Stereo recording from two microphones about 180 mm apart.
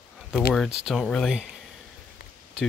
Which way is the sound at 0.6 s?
Centre (ahead or behind).